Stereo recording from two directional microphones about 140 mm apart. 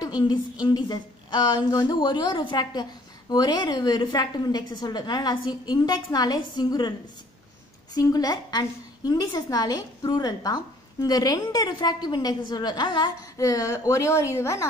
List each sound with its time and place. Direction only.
0.0 s a woman's voice: 30° left (ahead or behind)
7.9 s a woman's voice: 25° left (ahead or behind)